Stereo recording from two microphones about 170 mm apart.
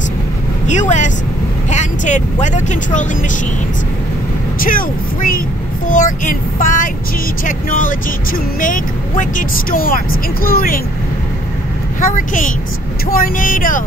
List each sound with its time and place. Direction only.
0.7 s child singing: 45° left (ahead or behind)
1.7 s vehicle: 45° left (ahead or behind)
2.4 s child singing: 45° left (ahead or behind)
4.6 s child singing: 55° left (ahead or behind)
7.4 s speech: 50° left (ahead or behind)
12.0 s child singing: 50° left (ahead or behind)